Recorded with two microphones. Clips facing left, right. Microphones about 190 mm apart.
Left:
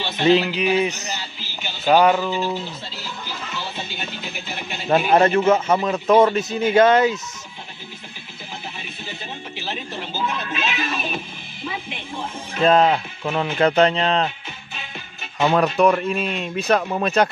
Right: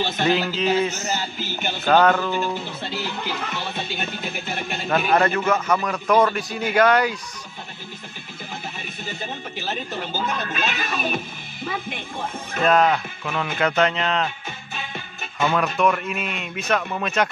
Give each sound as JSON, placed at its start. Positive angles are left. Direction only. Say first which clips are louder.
{"t": 0.2, "sound": "speech", "louder": "left 6 dB", "side_deg": 20}
{"t": 1.1, "sound": "speech", "louder": "right 6 dB", "side_deg": -50}
{"t": 1.9, "sound": "speech", "louder": "left 2 dB", "side_deg": 10}
{"t": 2.8, "sound": "speech", "louder": "right 6 dB", "side_deg": -60}
{"t": 4.8, "sound": "a man's voice", "louder": "left 4 dB", "side_deg": 25}
{"t": 9.7, "sound": "speech", "louder": "right 2 dB", "side_deg": -45}
{"t": 12.6, "sound": "speech", "louder": "left 2 dB", "side_deg": 25}
{"t": 15.4, "sound": "speech", "louder": "left 4 dB", "side_deg": 35}